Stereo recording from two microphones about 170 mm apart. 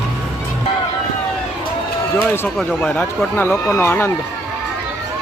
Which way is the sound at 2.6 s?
5° left (ahead or behind).